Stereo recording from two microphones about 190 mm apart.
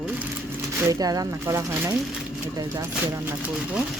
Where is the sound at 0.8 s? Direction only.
20° right (ahead or behind).